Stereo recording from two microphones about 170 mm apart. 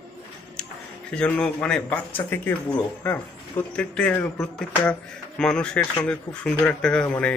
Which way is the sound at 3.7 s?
5° left (ahead or behind).